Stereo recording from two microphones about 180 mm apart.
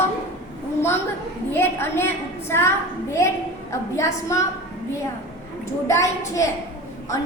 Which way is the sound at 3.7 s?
15° left (ahead or behind).